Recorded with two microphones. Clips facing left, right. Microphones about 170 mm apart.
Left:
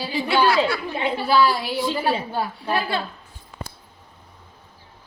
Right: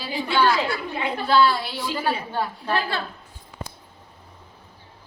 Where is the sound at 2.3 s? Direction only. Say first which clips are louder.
Left 1 dB; 10° left (ahead or behind).